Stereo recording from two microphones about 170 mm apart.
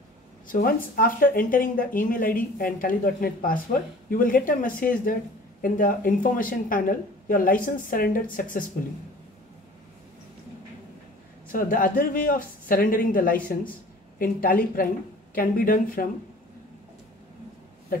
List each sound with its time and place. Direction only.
0.5 s speech: 55° left (ahead or behind)
11.5 s speech: 55° left (ahead or behind)